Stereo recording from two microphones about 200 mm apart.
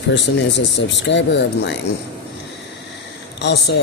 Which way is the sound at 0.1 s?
60° left (ahead or behind).